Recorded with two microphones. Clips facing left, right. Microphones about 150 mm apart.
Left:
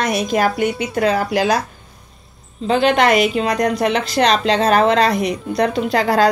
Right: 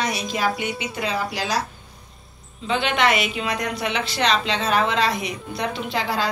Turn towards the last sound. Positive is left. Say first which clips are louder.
# left 9 dB
turn(degrees=40)  # may be behind; listen again after turning